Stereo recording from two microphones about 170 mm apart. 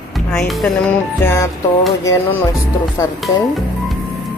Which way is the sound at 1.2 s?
20° left (ahead or behind).